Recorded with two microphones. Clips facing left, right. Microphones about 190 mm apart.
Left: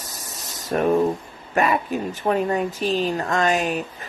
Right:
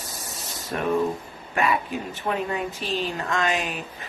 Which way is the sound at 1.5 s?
45° left (ahead or behind).